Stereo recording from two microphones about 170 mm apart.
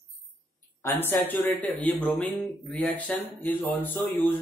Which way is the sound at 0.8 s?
10° left (ahead or behind).